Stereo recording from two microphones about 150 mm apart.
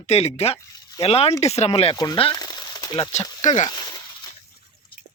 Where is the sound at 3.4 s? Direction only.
50° left (ahead or behind).